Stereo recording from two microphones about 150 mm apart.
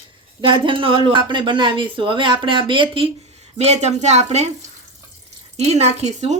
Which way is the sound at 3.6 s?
50° right (ahead or behind).